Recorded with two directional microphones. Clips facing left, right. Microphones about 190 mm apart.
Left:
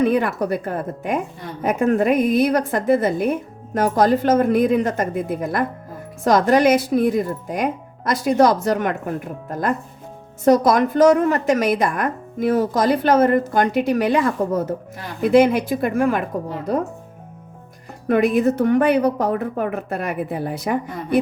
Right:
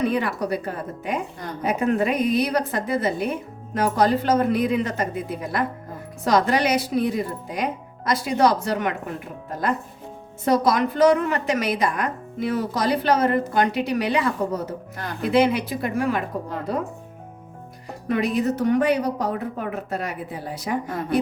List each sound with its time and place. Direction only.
0.0 s a woman's voice: 50° left (ahead or behind)
18.1 s a woman's voice: 55° left (ahead or behind)